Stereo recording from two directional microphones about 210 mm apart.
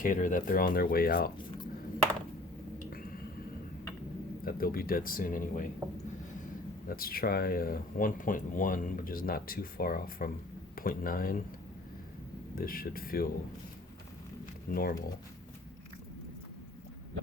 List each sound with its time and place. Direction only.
0.0 s speech: 40° left (ahead or behind)
4.4 s speech: 45° left (ahead or behind)
6.8 s speech: 45° left (ahead or behind)
12.5 s speech: 45° left (ahead or behind)
14.7 s speech: 45° left (ahead or behind)